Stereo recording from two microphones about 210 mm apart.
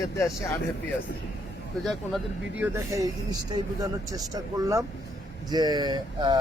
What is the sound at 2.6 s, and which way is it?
Speech, 15° right (ahead or behind).